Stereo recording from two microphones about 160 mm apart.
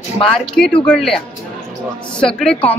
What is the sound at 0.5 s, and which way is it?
A woman's voice, 5° left (ahead or behind).